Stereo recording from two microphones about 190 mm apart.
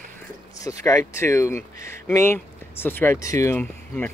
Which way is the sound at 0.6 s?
20° left (ahead or behind).